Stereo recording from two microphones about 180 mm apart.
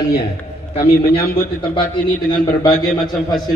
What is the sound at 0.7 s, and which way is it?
Speech, 30° left (ahead or behind).